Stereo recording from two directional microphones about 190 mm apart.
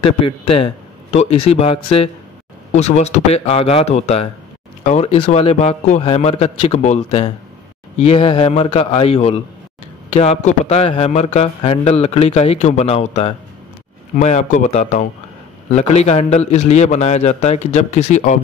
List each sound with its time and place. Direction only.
0.0 s speech: 30° left (ahead or behind)